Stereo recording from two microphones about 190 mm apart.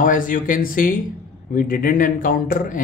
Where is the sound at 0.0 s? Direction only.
45° left (ahead or behind).